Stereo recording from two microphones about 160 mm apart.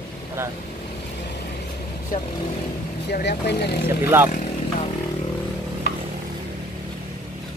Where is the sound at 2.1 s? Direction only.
60° left (ahead or behind).